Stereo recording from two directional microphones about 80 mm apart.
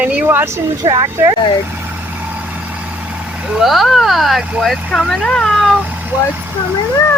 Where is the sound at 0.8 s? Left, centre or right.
Right.